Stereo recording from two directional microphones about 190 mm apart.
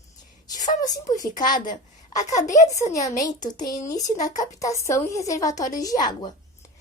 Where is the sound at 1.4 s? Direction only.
45° left (ahead or behind).